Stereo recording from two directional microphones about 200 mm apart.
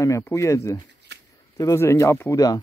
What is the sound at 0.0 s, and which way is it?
Speech, 15° left (ahead or behind).